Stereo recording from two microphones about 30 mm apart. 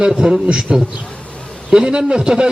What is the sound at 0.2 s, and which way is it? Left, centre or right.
A man's voice, right.